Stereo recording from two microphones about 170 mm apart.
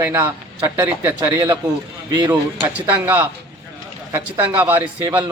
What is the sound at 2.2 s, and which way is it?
Speech, 25° right (ahead or behind).